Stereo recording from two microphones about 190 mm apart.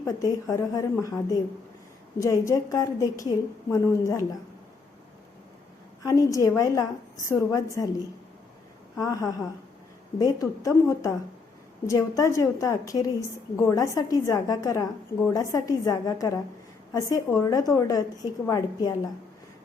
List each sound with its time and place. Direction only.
0.0 s a woman's voice: 15° left (ahead or behind)
6.0 s a woman's voice: 20° left (ahead or behind)
9.0 s a woman's voice: 20° left (ahead or behind)